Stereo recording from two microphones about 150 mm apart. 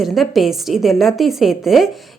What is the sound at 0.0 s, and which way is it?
A woman's voice, centre (ahead or behind).